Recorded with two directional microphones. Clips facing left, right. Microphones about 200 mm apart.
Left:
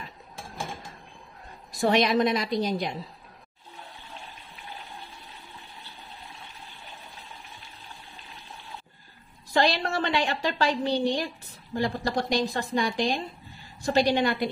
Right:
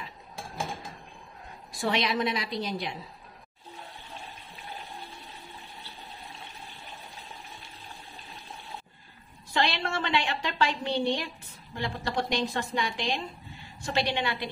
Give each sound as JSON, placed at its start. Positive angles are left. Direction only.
{"t": 1.7, "sound": "a woman's voice", "side_deg": 40}
{"t": 9.5, "sound": "a woman's voice", "side_deg": 40}